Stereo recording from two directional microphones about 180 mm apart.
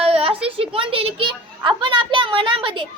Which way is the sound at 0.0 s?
30° right (ahead or behind).